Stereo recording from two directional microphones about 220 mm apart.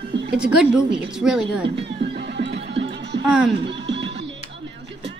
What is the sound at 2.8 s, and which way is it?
Music, 55° right (ahead or behind).